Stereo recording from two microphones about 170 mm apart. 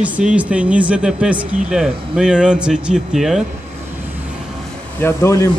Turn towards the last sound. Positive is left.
turn(degrees=15)  # may be behind; listen again after turning